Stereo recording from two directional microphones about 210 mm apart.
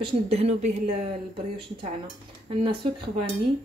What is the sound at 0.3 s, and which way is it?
A woman's voice, 30° right (ahead or behind).